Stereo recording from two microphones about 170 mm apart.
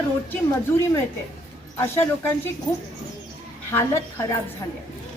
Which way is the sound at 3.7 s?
15° left (ahead or behind).